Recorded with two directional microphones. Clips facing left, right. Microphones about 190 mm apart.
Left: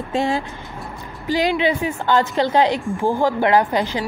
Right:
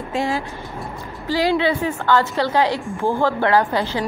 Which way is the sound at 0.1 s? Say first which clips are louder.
Left 2 dB; 25° left (ahead or behind).